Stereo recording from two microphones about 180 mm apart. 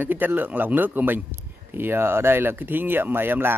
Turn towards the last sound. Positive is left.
turn(degrees=-10)  # may be behind; listen again after turning